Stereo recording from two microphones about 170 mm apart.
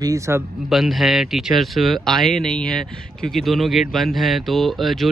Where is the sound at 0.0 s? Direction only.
20° right (ahead or behind).